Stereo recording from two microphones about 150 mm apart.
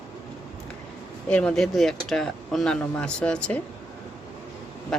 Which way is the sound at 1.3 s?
5° left (ahead or behind).